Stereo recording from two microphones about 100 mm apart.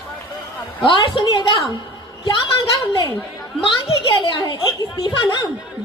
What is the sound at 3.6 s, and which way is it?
A woman's voice, 60° left (ahead or behind).